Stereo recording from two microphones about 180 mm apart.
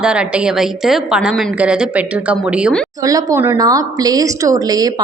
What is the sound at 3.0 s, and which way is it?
A woman's voice, 20° right (ahead or behind).